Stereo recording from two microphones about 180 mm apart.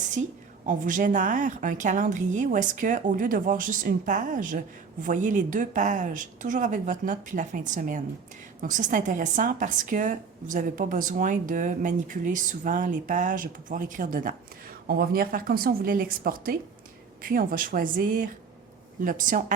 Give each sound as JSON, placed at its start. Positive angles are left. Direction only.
{"t": 0.2, "sound": "a woman's voice", "side_deg": -35}